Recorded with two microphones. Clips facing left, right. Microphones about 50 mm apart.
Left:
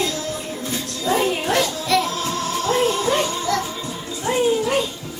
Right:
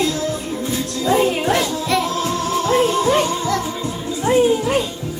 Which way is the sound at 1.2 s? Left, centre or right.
Right.